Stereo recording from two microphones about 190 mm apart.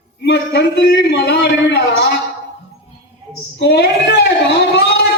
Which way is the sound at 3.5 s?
65° left (ahead or behind).